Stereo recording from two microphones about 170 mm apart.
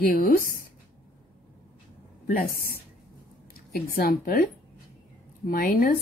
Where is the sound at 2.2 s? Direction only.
55° left (ahead or behind).